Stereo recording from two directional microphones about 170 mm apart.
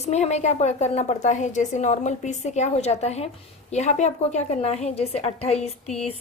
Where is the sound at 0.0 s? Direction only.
40° left (ahead or behind).